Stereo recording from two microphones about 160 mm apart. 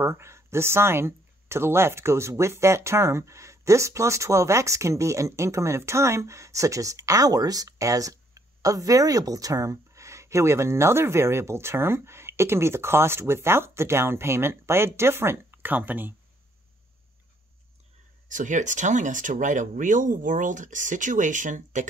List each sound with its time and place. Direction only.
0.0 s speech: 15° right (ahead or behind)
18.3 s speech: 50° right (ahead or behind)